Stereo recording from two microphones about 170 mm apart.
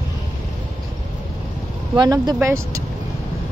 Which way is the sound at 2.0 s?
25° right (ahead or behind).